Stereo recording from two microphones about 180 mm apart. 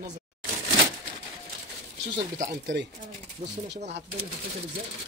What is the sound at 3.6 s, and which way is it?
Speech, 70° right (ahead or behind).